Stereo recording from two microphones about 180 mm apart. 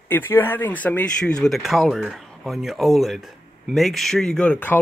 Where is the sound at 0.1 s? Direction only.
10° left (ahead or behind).